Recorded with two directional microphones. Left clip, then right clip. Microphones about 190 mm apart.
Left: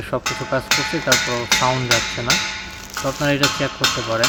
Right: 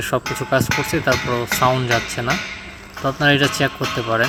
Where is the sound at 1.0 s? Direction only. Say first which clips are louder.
Left 1 dB; 20° right (ahead or behind).